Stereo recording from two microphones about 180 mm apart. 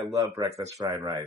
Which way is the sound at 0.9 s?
20° right (ahead or behind).